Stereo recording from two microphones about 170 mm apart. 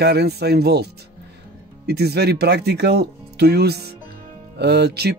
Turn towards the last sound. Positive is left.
turn(degrees=-70)  # may be behind; listen again after turning